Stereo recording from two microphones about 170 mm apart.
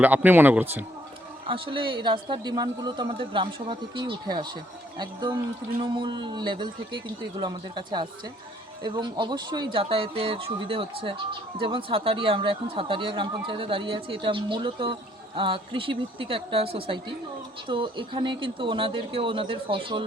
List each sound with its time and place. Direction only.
0.0 s a man's voice: 10° right (ahead or behind)
1.5 s speech: 30° right (ahead or behind)